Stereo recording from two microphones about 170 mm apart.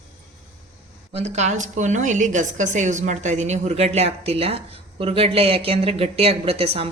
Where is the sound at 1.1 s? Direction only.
40° right (ahead or behind).